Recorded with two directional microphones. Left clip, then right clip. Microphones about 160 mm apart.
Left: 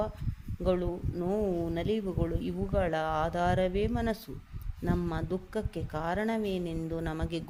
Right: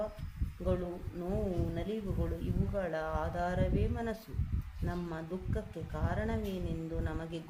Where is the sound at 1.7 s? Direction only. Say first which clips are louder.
Left 7 dB; 50° left (ahead or behind).